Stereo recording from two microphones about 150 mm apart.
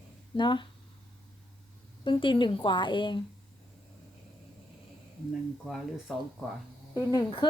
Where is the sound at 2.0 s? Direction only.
35° left (ahead or behind).